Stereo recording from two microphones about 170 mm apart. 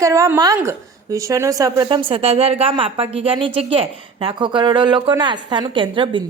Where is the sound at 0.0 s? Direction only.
20° right (ahead or behind).